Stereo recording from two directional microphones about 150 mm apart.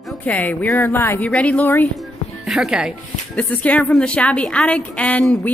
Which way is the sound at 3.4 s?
10° left (ahead or behind).